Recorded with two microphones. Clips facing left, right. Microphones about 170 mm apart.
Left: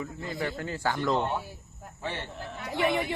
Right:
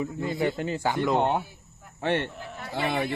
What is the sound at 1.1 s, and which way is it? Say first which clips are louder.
A woman's voice: right 4 dB; 65° right (ahead or behind).